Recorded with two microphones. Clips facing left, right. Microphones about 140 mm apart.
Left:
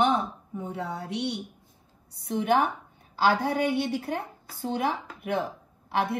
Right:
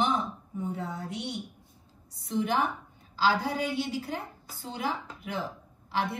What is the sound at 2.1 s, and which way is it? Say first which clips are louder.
A woman's voice: left 4 dB; 60° left (ahead or behind).